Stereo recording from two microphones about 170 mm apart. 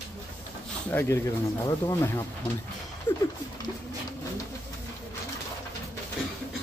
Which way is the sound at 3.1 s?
10° left (ahead or behind).